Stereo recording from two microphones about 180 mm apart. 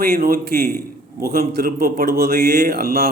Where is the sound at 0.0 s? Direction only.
55° right (ahead or behind).